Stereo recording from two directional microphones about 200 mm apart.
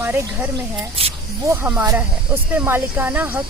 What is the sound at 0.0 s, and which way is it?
Speech, 10° right (ahead or behind).